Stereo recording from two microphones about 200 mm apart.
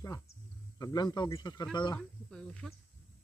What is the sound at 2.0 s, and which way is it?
Speech, 5° left (ahead or behind).